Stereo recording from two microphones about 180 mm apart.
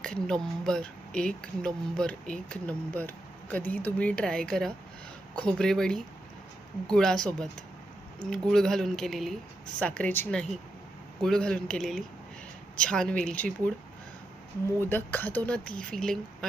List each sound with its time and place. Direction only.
0.0 s speech: 5° left (ahead or behind)
14.8 s speech: 10° left (ahead or behind)